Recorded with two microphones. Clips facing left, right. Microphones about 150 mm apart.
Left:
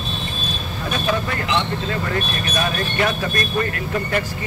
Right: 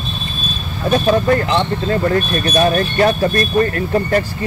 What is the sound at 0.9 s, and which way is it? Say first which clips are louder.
Speech: right 10 dB; 35° right (ahead or behind).